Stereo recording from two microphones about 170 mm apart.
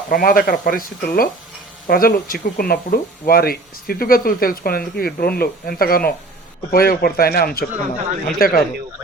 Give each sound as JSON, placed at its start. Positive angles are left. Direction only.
{"t": 0.1, "sound": "speech", "side_deg": 55}